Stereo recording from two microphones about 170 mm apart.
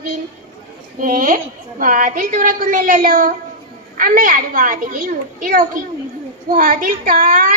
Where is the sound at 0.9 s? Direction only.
55° right (ahead or behind).